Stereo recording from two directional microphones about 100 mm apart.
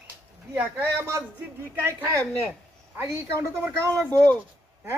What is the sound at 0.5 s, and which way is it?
A woman's voice, 25° right (ahead or behind).